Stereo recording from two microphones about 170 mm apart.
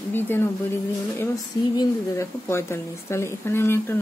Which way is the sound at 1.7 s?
15° left (ahead or behind).